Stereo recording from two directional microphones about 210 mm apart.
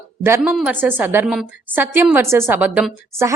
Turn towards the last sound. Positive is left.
turn(degrees=-10)  # may be behind; listen again after turning